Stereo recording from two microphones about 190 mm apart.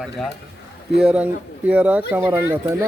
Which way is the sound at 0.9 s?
5° right (ahead or behind).